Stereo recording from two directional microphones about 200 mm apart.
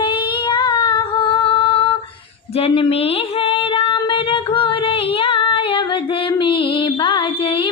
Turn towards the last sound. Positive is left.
turn(degrees=25)  # may be behind; listen again after turning